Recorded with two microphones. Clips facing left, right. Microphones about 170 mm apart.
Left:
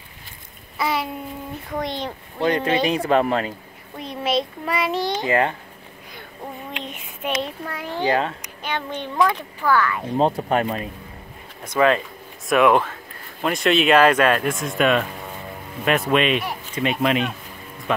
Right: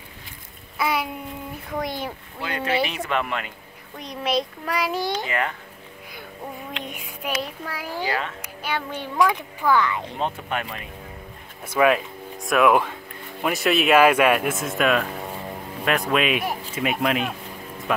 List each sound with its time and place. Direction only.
0.7 s babbling: centre (ahead or behind)
2.4 s speech: 35° left (ahead or behind)
4.0 s a child's voice: centre (ahead or behind)
5.1 s a child's voice: 25° left (ahead or behind)
6.7 s a sound: 5° right (ahead or behind)
8.4 s speech: 5° right (ahead or behind)
10.1 s speech: 35° left (ahead or behind)
11.6 s a child's voice: 10° right (ahead or behind)